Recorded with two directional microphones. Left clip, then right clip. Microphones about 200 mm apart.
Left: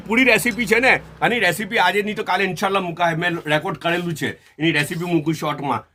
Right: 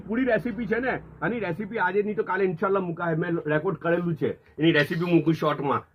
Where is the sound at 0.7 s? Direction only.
90° left; by 2.7 s 60° left (ahead or behind).